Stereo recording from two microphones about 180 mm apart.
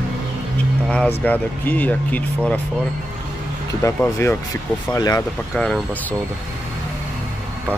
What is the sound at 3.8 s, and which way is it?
Speech, 15° left (ahead or behind).